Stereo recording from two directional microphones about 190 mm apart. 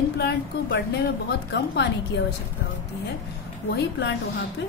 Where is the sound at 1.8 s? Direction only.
65° left (ahead or behind).